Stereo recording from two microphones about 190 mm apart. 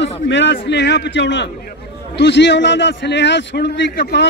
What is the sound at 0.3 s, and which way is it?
A man's voice, 70° left (ahead or behind).